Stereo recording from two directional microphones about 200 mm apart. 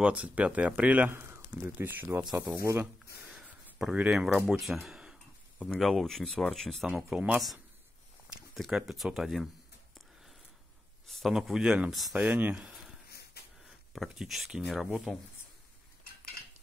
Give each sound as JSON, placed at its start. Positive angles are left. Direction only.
{"t": 0.0, "sound": "speech", "side_deg": -5}
{"t": 11.1, "sound": "speech", "side_deg": 0}
{"t": 13.1, "sound": "wheeze", "side_deg": 50}
{"t": 13.9, "sound": "speech", "side_deg": 0}